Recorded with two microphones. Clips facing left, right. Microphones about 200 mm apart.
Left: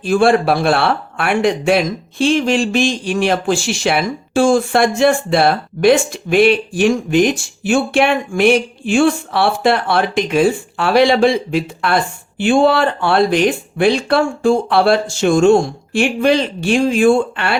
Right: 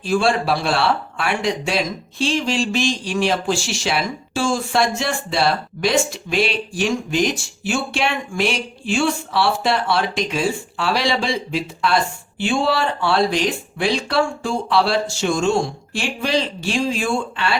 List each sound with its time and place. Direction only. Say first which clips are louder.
0.0 s speech: left 6 dB; 55° left (ahead or behind)